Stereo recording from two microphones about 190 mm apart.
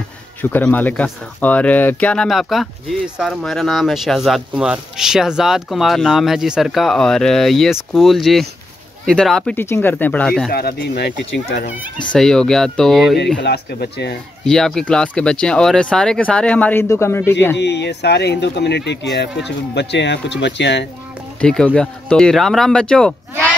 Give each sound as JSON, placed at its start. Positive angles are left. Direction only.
{"t": 0.4, "sound": "speech", "side_deg": 10}
{"t": 10.5, "sound": "speech", "side_deg": 55}
{"t": 12.1, "sound": "speech", "side_deg": 5}
{"t": 13.4, "sound": "speech", "side_deg": 60}
{"t": 14.4, "sound": "speech", "side_deg": 5}
{"t": 17.6, "sound": "speech", "side_deg": 65}
{"t": 21.4, "sound": "speech", "side_deg": 5}